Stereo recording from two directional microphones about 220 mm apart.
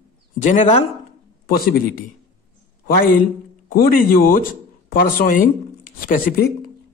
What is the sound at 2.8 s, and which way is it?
A man's voice, 40° left (ahead or behind).